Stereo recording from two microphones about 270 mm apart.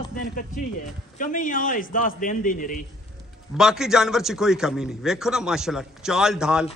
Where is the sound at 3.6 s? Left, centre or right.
Centre.